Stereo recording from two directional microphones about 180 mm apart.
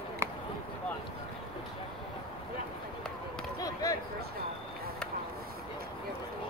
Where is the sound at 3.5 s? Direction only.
20° left (ahead or behind).